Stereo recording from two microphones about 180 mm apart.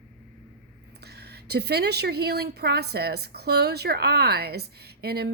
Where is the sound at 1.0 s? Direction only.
65° right (ahead or behind).